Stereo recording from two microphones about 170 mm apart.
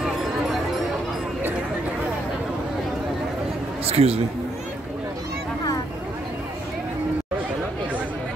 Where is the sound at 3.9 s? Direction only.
35° right (ahead or behind).